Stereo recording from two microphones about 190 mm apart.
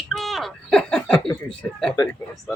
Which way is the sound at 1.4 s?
5° left (ahead or behind).